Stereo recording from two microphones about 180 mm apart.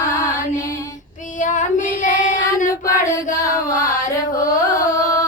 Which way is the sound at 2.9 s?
15° left (ahead or behind).